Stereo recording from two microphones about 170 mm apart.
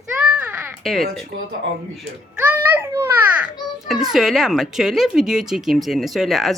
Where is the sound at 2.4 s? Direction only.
10° right (ahead or behind).